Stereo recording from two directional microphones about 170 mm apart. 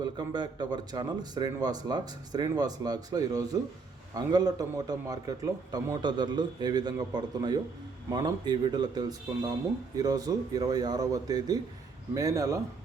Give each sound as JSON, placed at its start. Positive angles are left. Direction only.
{"t": 0.0, "sound": "speech", "side_deg": -25}